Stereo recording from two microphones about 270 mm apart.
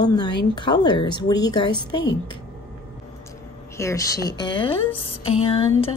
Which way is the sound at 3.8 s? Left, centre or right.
Centre.